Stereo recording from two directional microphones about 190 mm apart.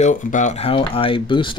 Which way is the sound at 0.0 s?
40° left (ahead or behind).